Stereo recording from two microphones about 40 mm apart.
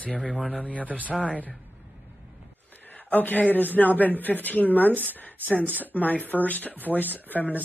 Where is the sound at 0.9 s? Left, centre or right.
Right.